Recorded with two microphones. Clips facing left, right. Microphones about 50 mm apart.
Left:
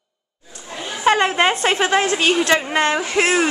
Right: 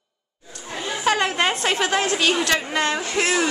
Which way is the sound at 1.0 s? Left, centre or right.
Left.